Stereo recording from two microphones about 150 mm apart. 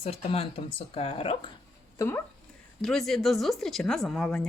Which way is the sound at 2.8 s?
5° left (ahead or behind).